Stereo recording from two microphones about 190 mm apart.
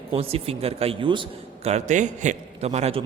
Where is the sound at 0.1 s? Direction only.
30° right (ahead or behind).